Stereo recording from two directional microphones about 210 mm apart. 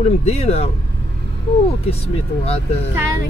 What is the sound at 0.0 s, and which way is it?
Speech, 30° left (ahead or behind).